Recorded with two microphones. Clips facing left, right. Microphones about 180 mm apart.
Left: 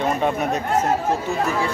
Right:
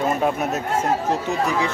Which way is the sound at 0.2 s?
5° right (ahead or behind).